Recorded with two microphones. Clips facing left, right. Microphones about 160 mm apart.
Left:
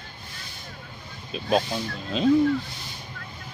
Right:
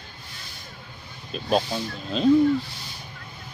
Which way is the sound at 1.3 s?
5° right (ahead or behind).